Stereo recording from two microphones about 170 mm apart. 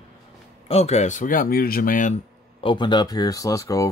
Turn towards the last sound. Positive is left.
turn(degrees=20)  # may be behind; listen again after turning